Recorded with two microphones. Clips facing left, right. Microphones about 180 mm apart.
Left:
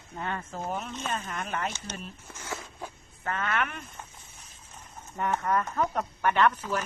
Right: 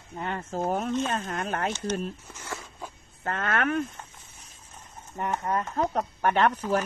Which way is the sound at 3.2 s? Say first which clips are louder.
Right 3 dB; 45° right (ahead or behind).